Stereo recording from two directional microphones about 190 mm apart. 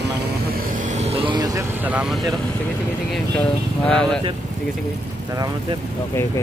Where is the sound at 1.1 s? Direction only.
25° right (ahead or behind).